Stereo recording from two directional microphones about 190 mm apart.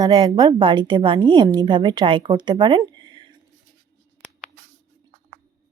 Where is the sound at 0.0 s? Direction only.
25° right (ahead or behind).